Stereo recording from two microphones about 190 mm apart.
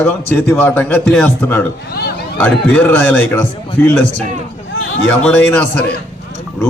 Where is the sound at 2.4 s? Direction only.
10° left (ahead or behind).